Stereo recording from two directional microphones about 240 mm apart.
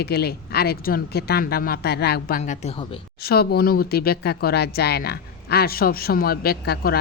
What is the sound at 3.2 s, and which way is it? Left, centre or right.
Speech, left.